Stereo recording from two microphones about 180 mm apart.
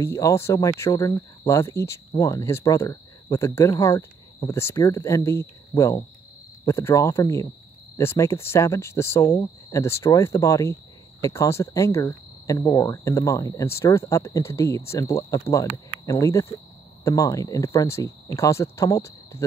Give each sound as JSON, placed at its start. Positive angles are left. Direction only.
{"t": 0.0, "sound": "speech", "side_deg": 15}